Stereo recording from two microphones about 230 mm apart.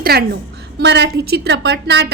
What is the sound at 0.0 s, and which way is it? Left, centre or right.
A woman's voice, right.